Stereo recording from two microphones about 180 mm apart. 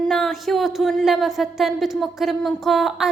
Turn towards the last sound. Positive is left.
turn(degrees=0)  # may be behind; listen again after turning